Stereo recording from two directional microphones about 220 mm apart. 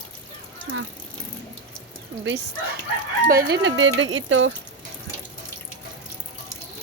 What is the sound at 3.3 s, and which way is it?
A woman's voice, 45° right (ahead or behind).